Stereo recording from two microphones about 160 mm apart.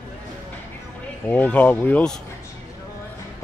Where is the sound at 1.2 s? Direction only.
10° left (ahead or behind).